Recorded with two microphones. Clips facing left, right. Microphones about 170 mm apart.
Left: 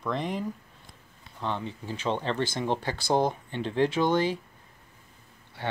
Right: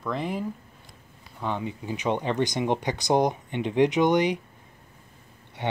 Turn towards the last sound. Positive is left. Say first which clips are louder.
# right 3 dB
turn(degrees=-20)  # may be behind; listen again after turning